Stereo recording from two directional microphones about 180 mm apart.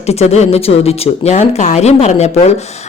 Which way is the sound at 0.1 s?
35° left (ahead or behind).